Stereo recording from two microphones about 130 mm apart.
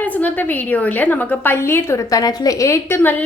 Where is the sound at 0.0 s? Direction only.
10° left (ahead or behind).